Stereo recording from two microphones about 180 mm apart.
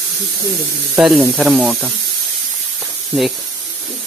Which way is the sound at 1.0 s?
Centre (ahead or behind).